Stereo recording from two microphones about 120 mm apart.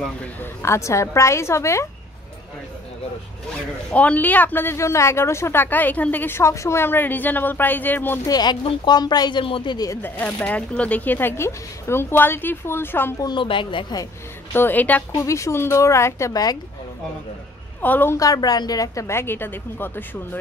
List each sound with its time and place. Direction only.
0.0 s speech: 10° left (ahead or behind)
0.6 s a woman's voice: 25° left (ahead or behind)
3.9 s speech: 10° left (ahead or behind)
8.3 s speech: 35° left (ahead or behind)
10.0 s speech: 15° left (ahead or behind)
13.2 s a woman's voice: 40° left (ahead or behind)
14.5 s speech: 15° left (ahead or behind)
15.2 s a woman's voice: 25° left (ahead or behind)
17.8 s speech: 15° left (ahead or behind)
18.2 s a woman's voice: 30° left (ahead or behind)